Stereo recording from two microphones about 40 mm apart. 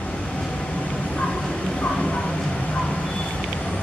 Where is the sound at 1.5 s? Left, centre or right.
Left.